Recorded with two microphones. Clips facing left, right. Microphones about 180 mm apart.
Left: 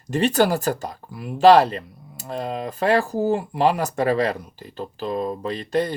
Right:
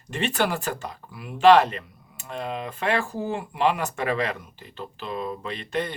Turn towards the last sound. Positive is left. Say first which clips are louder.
# left 6 dB
turn(degrees=35)  # may be behind; listen again after turning